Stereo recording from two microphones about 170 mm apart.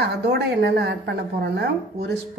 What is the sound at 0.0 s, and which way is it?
A woman's voice, 75° right (ahead or behind).